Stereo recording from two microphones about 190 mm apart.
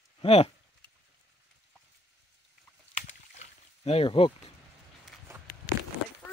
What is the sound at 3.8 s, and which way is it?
Speech, 30° left (ahead or behind).